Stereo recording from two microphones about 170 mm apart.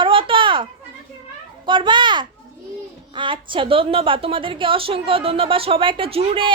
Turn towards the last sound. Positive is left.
turn(degrees=-30)  # may be behind; listen again after turning